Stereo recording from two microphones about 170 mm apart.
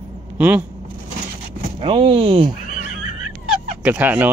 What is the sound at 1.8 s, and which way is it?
Speech, 30° right (ahead or behind).